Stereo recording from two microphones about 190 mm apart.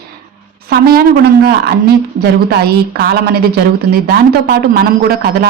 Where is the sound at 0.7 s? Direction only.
55° right (ahead or behind).